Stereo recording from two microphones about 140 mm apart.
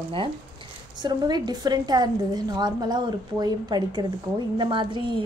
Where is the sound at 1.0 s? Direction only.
30° right (ahead or behind).